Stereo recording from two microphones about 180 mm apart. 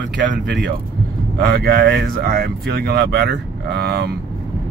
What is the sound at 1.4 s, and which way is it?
Speech, 60° right (ahead or behind).